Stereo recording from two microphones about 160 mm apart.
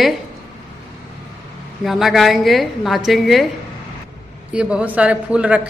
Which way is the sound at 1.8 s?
Centre (ahead or behind).